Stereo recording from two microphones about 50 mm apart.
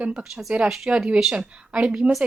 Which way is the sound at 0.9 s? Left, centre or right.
Right.